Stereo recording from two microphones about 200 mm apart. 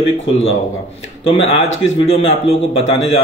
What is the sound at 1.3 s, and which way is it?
Speech, 75° left (ahead or behind).